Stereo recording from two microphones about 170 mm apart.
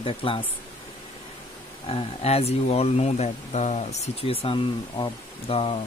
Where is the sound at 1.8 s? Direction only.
35° left (ahead or behind).